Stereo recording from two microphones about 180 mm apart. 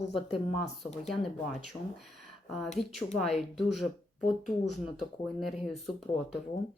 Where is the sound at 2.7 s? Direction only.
40° left (ahead or behind).